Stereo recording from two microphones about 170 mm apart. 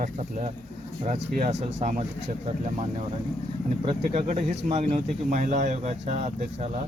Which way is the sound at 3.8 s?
40° right (ahead or behind).